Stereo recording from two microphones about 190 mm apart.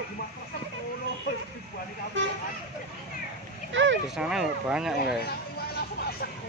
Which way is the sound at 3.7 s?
75° right (ahead or behind).